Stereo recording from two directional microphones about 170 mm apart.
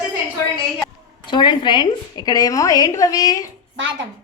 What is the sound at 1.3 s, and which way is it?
A woman's voice, 25° left (ahead or behind).